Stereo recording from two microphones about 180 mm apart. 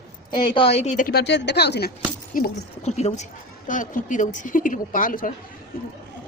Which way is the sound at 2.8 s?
35° left (ahead or behind).